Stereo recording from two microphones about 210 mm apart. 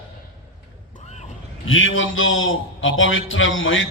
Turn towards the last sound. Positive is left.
turn(degrees=65)  # may be behind; listen again after turning